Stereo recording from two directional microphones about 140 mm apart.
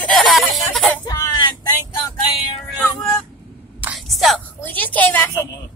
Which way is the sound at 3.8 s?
5° right (ahead or behind).